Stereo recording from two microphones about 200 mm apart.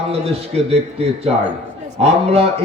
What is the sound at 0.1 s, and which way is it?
A man's voice, 30° right (ahead or behind).